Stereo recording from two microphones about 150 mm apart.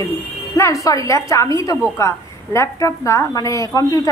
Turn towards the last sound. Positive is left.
turn(degrees=20)  # may be behind; listen again after turning